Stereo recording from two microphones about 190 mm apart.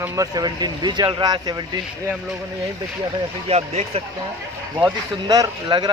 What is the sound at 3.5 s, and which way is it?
Speech, 35° right (ahead or behind).